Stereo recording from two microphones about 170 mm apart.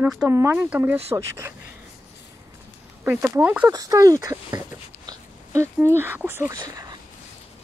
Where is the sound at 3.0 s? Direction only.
10° right (ahead or behind).